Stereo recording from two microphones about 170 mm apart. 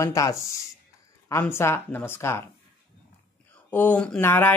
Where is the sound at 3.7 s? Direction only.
10° left (ahead or behind).